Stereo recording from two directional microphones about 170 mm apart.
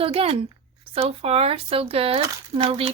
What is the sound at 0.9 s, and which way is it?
Speech, 35° right (ahead or behind).